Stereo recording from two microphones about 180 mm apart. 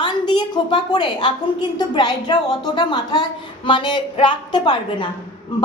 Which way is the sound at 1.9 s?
25° left (ahead or behind).